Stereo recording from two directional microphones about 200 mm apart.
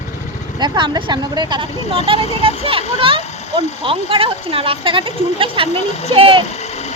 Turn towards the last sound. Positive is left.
turn(degrees=-25)  # may be behind; listen again after turning